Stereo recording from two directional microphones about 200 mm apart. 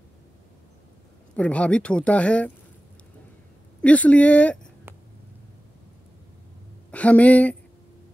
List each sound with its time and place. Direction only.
1.3 s speech: 5° left (ahead or behind)
3.8 s speech: 5° left (ahead or behind)
6.9 s speech: 5° left (ahead or behind)